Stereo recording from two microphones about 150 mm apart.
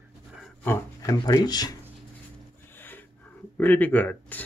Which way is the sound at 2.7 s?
15° left (ahead or behind).